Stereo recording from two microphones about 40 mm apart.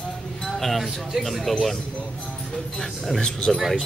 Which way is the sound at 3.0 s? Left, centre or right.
Centre.